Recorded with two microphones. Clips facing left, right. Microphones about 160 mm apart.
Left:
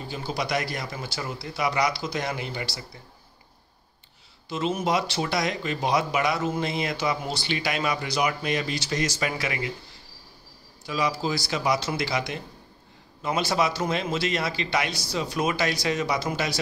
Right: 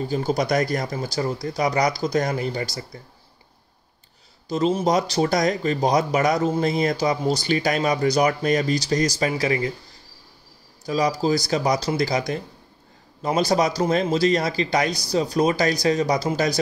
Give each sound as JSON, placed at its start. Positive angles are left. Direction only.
{"t": 0.0, "sound": "speech", "side_deg": -45}
{"t": 4.5, "sound": "speech", "side_deg": -35}
{"t": 10.9, "sound": "speech", "side_deg": -40}